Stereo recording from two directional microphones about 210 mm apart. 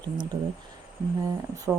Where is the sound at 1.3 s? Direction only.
15° right (ahead or behind).